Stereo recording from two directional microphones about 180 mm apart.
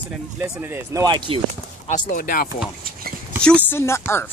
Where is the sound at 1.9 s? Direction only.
50° left (ahead or behind).